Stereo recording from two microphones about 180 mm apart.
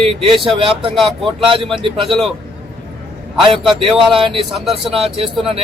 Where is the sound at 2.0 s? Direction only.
Centre (ahead or behind).